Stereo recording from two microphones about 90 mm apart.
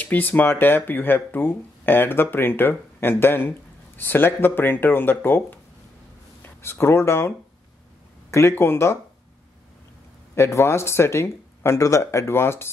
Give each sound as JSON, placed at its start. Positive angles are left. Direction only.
{"t": 0.0, "sound": "speech", "side_deg": 20}
{"t": 10.3, "sound": "speech", "side_deg": 30}